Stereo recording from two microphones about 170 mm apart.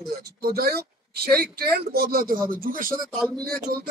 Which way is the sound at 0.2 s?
65° right (ahead or behind).